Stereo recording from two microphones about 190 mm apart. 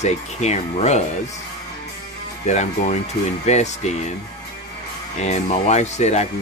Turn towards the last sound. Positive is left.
turn(degrees=35)  # may be behind; listen again after turning